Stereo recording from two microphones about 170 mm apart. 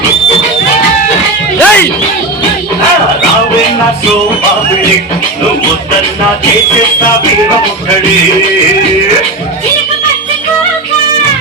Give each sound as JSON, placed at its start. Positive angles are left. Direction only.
{"t": 1.5, "sound": "music", "side_deg": 10}